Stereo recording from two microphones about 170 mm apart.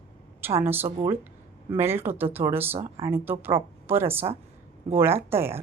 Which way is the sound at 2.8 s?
30° right (ahead or behind).